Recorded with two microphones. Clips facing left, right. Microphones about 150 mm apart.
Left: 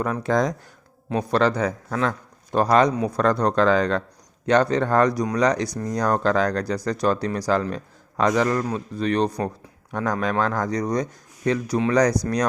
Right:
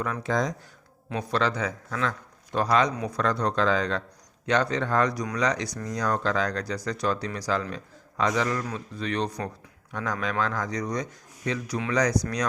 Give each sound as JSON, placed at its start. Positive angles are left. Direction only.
{"t": 0.2, "sound": "speech", "side_deg": 55}
{"t": 1.1, "sound": "speech", "side_deg": 45}
{"t": 4.4, "sound": "speech", "side_deg": 40}
{"t": 5.1, "sound": "speech", "side_deg": 30}